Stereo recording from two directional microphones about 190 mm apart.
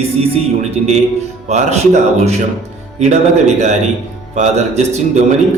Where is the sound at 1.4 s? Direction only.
35° right (ahead or behind).